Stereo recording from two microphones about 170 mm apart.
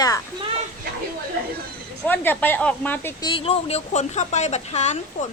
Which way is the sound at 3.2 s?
35° left (ahead or behind).